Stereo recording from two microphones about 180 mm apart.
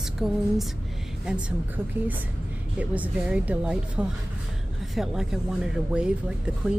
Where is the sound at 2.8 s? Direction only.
10° right (ahead or behind).